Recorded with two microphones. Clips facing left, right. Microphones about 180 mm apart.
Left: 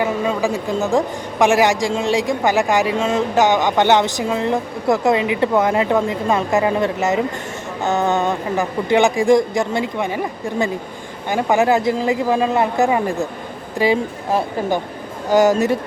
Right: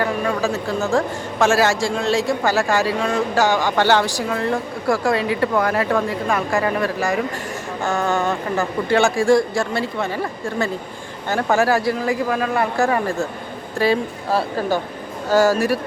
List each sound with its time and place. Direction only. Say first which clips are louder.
0.0 s a woman's voice: left 2 dB; 20° left (ahead or behind)